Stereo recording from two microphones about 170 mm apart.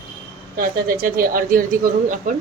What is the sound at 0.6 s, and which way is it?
A woman's voice, 60° right (ahead or behind).